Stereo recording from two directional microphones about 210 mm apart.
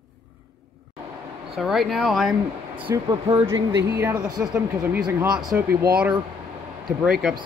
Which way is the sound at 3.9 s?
10° right (ahead or behind).